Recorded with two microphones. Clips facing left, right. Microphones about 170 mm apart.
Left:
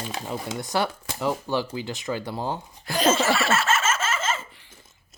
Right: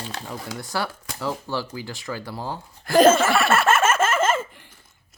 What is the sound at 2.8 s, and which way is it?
Laughter, 50° right (ahead or behind).